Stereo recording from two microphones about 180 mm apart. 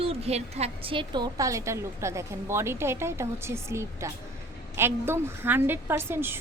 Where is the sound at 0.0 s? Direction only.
35° right (ahead or behind).